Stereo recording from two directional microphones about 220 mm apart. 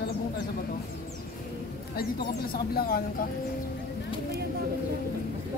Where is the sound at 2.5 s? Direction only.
45° left (ahead or behind).